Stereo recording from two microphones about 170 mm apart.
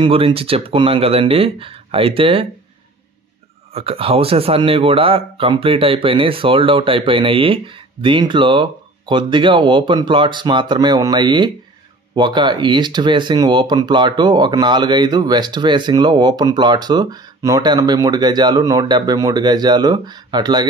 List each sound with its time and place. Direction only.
0.0 s speech: 35° right (ahead or behind)
3.7 s speech: 35° right (ahead or behind)